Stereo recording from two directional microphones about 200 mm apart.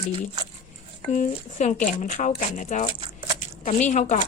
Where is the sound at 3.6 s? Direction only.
35° left (ahead or behind).